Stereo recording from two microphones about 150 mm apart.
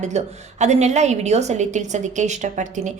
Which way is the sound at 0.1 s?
50° right (ahead or behind).